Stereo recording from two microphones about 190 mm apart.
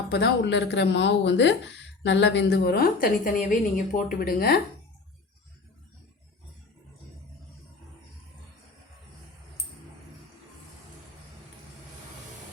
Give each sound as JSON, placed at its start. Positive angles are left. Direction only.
{"t": 0.1, "sound": "speech", "side_deg": 65}